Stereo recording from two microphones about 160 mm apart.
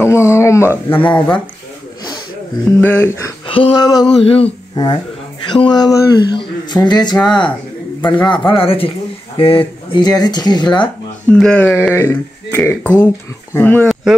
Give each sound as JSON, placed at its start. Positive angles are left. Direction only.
{"t": 0.0, "sound": "a sound", "side_deg": 15}
{"t": 2.8, "sound": "speech", "side_deg": 15}
{"t": 3.4, "sound": "speech", "side_deg": 35}
{"t": 11.2, "sound": "speech", "side_deg": 5}